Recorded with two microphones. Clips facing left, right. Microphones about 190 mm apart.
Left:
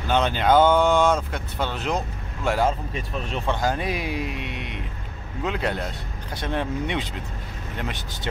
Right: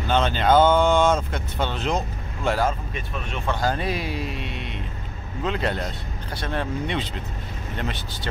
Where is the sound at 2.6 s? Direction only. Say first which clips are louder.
Left 1 dB; 30° left (ahead or behind).